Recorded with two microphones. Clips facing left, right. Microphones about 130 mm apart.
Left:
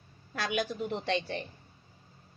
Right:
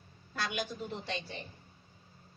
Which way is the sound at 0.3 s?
65° left (ahead or behind).